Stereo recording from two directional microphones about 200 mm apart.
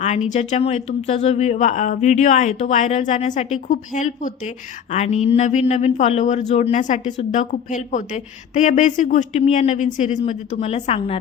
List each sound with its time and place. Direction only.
0.3 s speech: 35° left (ahead or behind)